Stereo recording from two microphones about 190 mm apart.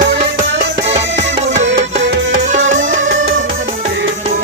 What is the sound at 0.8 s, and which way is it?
Music, 35° right (ahead or behind).